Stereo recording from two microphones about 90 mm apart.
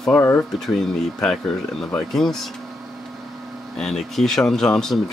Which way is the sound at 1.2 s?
5° left (ahead or behind).